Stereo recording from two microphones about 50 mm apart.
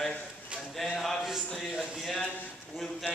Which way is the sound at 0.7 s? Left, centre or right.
Centre.